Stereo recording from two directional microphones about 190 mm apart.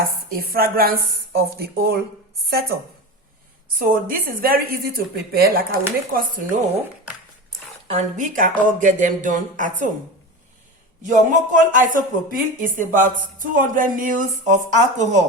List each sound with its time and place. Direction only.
0.0 s a woman's voice: 50° right (ahead or behind)
3.8 s speech: 50° right (ahead or behind)
7.9 s speech: 40° right (ahead or behind)
11.0 s speech: 40° right (ahead or behind)